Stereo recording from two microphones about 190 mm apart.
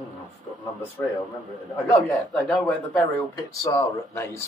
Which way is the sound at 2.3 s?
5° left (ahead or behind).